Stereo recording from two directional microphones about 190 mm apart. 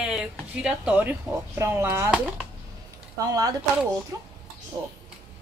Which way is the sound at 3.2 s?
20° right (ahead or behind).